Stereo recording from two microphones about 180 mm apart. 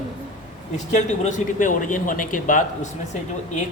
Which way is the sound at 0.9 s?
45° left (ahead or behind).